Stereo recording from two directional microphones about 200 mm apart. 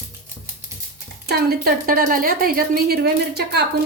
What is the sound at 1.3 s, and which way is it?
A woman's voice, 50° right (ahead or behind).